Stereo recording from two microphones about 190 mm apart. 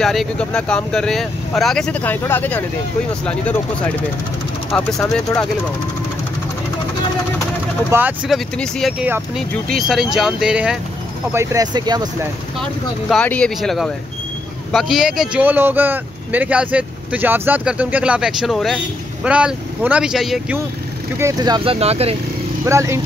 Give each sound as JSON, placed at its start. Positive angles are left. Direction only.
{"t": 0.0, "sound": "speech", "side_deg": 0}
{"t": 5.1, "sound": "speech", "side_deg": 5}
{"t": 7.9, "sound": "speech", "side_deg": -10}
{"t": 8.5, "sound": "speech", "side_deg": 5}
{"t": 11.3, "sound": "speech", "side_deg": -20}
{"t": 13.1, "sound": "speech", "side_deg": 5}
{"t": 21.2, "sound": "speech", "side_deg": -20}
{"t": 22.7, "sound": "speech", "side_deg": -15}